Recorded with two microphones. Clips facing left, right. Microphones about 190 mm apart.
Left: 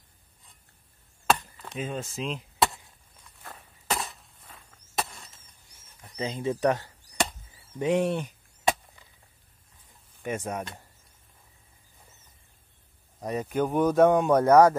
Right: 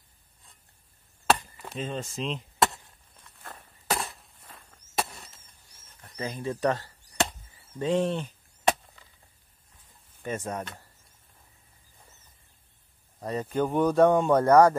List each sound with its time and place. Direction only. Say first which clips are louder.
1.8 s chop: even; 5° left (ahead or behind)
3.3 s walk: even; centre (ahead or behind)
5.9 s a sound: left 3 dB; 10° left (ahead or behind)
6.2 s speech: left 2 dB; 20° left (ahead or behind)
7.8 s chop: left 1 dB; 15° left (ahead or behind)
10.2 s speech: left 1 dB; 15° left (ahead or behind)
13.2 s speech: left 1 dB; 15° left (ahead or behind)
13.6 s speech: even; centre (ahead or behind)